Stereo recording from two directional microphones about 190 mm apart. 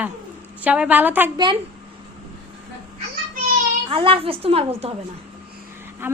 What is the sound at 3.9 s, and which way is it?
A woman's voice, 30° right (ahead or behind).